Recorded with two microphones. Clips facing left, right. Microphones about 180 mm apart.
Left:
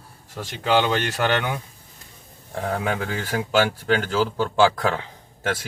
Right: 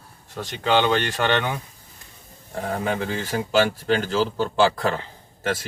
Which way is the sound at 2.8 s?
Centre (ahead or behind).